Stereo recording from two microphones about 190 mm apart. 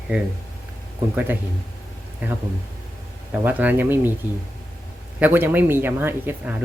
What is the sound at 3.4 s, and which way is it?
Speech, 10° right (ahead or behind).